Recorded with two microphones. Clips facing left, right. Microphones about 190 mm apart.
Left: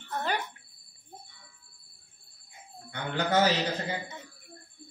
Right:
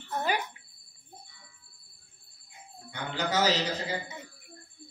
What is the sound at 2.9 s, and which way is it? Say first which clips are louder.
A man's voice: left 3 dB; 55° left (ahead or behind).